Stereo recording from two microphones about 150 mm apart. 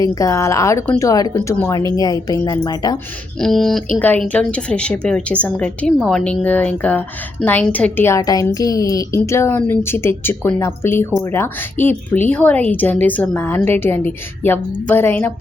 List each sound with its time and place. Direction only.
0.0 s a woman's voice: 25° left (ahead or behind)
3.4 s a woman's voice: centre (ahead or behind)